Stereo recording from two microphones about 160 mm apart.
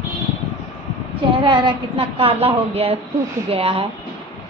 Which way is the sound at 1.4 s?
30° right (ahead or behind).